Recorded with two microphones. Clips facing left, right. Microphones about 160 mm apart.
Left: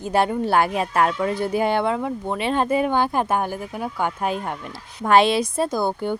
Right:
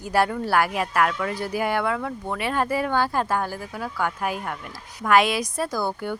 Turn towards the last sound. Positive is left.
turn(degrees=25)  # may be behind; listen again after turning